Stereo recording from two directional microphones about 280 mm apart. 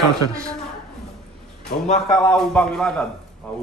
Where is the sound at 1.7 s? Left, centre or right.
Left.